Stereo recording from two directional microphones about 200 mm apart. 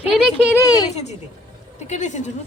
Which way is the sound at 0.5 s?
15° left (ahead or behind).